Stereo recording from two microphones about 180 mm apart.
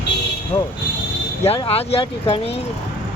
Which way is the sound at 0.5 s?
30° left (ahead or behind).